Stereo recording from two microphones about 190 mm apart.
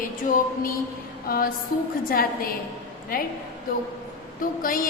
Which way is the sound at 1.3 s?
50° left (ahead or behind).